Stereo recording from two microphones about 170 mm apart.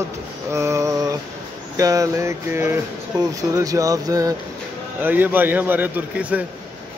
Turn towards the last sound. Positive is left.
turn(degrees=-10)  # may be behind; listen again after turning